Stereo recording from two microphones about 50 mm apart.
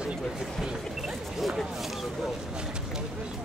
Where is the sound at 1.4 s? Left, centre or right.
Centre.